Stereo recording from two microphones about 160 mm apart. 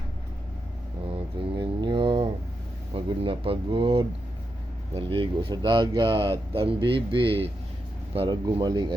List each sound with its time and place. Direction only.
1.1 s mantra: 30° right (ahead or behind)
2.9 s speech: 35° right (ahead or behind)